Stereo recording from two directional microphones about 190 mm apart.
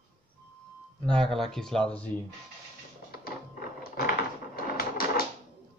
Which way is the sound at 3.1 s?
55° left (ahead or behind).